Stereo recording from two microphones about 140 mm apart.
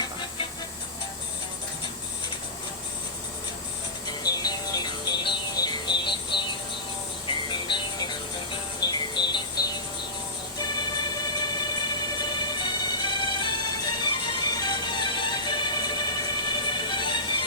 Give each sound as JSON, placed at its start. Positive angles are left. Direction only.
{"t": 4.0, "sound": "music", "side_deg": 30}